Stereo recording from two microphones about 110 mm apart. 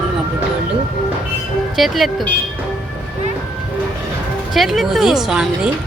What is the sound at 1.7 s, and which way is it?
Speech, centre (ahead or behind).